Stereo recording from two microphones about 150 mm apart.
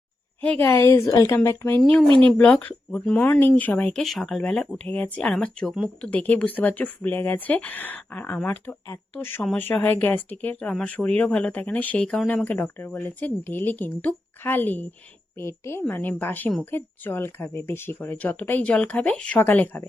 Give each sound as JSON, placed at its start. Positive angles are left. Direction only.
{"t": 0.4, "sound": "speech", "side_deg": 10}
{"t": 1.8, "sound": "speech", "side_deg": 0}
{"t": 2.0, "sound": "speech", "side_deg": -35}
{"t": 2.4, "sound": "speech", "side_deg": 10}
{"t": 3.9, "sound": "speech", "side_deg": 0}